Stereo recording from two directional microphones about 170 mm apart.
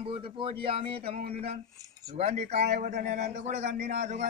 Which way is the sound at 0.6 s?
35° right (ahead or behind).